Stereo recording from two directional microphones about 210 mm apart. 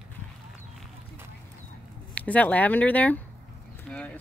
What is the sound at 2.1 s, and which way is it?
Speech, 5° left (ahead or behind).